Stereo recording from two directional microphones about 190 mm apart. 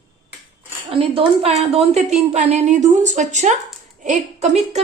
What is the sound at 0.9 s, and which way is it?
A woman's voice, 30° right (ahead or behind).